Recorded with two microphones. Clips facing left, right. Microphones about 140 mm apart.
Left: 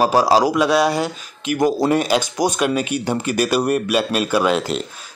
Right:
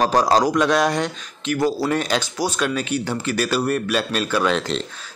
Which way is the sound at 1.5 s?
15° left (ahead or behind).